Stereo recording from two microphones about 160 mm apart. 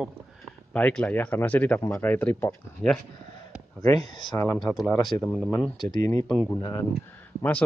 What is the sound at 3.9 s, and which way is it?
Speech, 25° left (ahead or behind).